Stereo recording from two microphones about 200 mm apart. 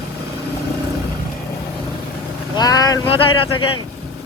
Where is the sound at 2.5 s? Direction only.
20° left (ahead or behind).